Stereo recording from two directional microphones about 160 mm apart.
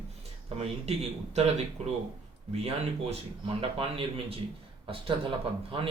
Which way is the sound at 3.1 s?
35° right (ahead or behind).